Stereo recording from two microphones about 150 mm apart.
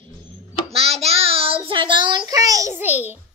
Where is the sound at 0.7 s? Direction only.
40° right (ahead or behind); by 3.2 s 10° right (ahead or behind).